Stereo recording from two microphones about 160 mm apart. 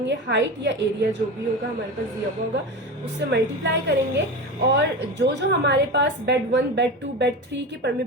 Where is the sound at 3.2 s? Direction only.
90° right.